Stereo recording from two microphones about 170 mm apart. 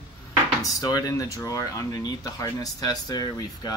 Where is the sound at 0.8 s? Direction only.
20° left (ahead or behind).